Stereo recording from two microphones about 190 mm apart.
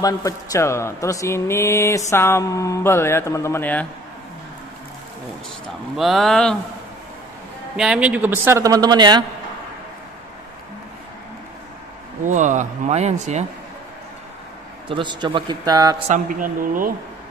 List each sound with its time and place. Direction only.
0.0 s speech: 15° left (ahead or behind)
5.9 s speech: centre (ahead or behind)
7.7 s a man's voice: 5° right (ahead or behind); by 9.2 s 20° right (ahead or behind)
12.2 s speech: 40° right (ahead or behind)
14.9 s speech: 25° right (ahead or behind)
16.1 s speech: 45° right (ahead or behind)